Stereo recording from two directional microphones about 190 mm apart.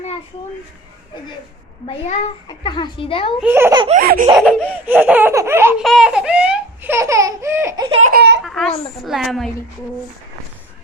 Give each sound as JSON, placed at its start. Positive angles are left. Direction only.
{"t": 2.5, "sound": "a child's voice", "side_deg": 25}
{"t": 3.4, "sound": "laughter", "side_deg": -10}
{"t": 3.9, "sound": "laughter", "side_deg": -45}
{"t": 4.4, "sound": "laughter", "side_deg": 0}
{"t": 5.8, "sound": "baby laughter", "side_deg": 0}
{"t": 7.9, "sound": "baby laughter", "side_deg": -30}
{"t": 8.1, "sound": "a sound", "side_deg": -60}
{"t": 8.4, "sound": "a sound", "side_deg": 0}
{"t": 9.0, "sound": "a woman's voice", "side_deg": 0}